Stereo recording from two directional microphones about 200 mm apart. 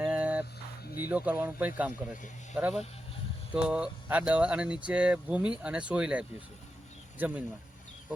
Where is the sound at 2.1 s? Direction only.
40° left (ahead or behind).